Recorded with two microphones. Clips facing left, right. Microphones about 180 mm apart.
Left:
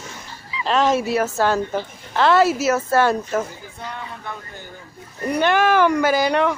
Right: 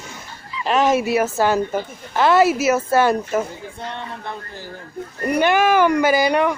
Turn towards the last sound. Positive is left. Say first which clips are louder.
# right 1 dB
turn(degrees=-5)  # may be behind; listen again after turning